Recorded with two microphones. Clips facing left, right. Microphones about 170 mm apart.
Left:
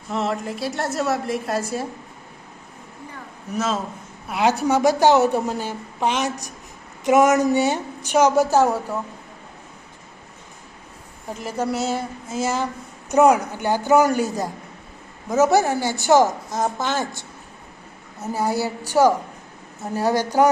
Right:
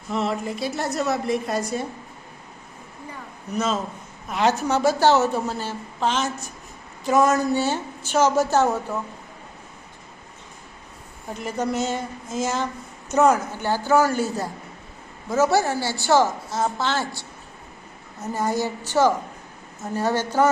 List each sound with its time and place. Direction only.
0.1 s a woman's voice: centre (ahead or behind)
3.5 s a woman's voice: 5° left (ahead or behind)
11.3 s a woman's voice: 5° left (ahead or behind)
18.3 s a woman's voice: 10° left (ahead or behind)